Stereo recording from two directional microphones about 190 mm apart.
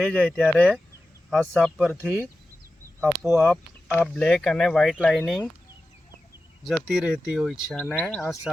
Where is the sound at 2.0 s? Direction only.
10° right (ahead or behind).